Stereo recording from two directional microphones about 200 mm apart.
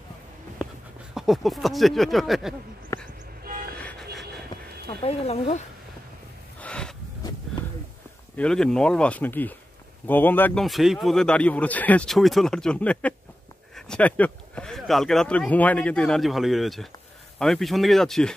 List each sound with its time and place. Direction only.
1.1 s a man's voice: centre (ahead or behind)
2.9 s vehicle: 15° left (ahead or behind)
3.7 s vehicle: 5° left (ahead or behind)
4.8 s speech: 30° left (ahead or behind)
6.6 s a sound: 5° left (ahead or behind)
8.4 s a man's voice: 5° left (ahead or behind)